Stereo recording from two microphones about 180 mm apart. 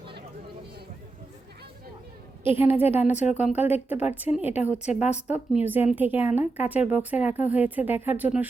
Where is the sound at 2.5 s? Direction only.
10° right (ahead or behind).